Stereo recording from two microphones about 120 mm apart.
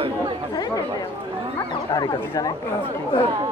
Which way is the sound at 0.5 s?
35° left (ahead or behind).